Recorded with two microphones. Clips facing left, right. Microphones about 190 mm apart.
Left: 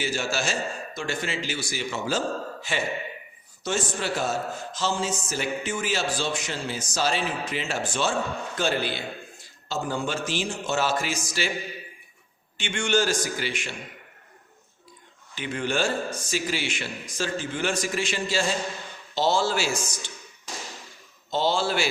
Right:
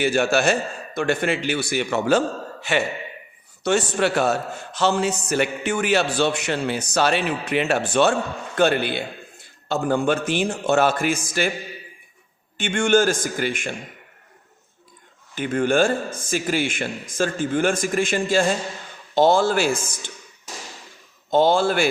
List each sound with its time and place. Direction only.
0.0 s a man's voice: 60° right (ahead or behind)
12.5 s a man's voice: 50° right (ahead or behind)
15.4 s a man's voice: 50° right (ahead or behind)
21.2 s a man's voice: 50° right (ahead or behind)